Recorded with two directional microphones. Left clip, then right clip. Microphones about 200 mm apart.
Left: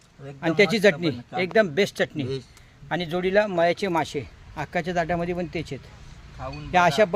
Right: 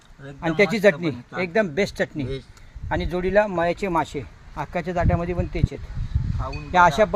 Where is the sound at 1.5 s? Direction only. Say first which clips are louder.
Left 1 dB; centre (ahead or behind).